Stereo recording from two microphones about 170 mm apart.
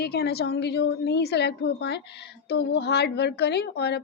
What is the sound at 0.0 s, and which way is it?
A woman's voice, 70° left (ahead or behind).